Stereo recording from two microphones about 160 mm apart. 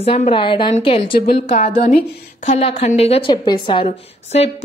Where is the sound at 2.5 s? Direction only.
40° left (ahead or behind).